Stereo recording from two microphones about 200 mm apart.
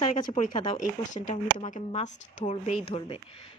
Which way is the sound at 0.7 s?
40° left (ahead or behind).